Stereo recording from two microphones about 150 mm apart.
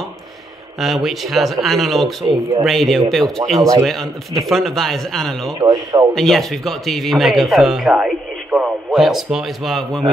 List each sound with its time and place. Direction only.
0.7 s speech: centre (ahead or behind)
5.6 s speech: 25° right (ahead or behind)
6.1 s speech: centre (ahead or behind)